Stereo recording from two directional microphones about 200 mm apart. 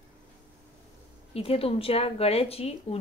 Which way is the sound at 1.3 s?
30° left (ahead or behind).